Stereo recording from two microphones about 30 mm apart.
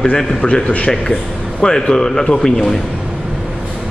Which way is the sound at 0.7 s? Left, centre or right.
Left.